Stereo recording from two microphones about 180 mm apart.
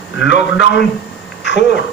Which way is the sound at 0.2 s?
80° left.